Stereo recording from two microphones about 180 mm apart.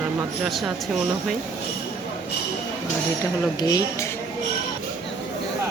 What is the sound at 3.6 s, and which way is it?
Speech, 20° left (ahead or behind).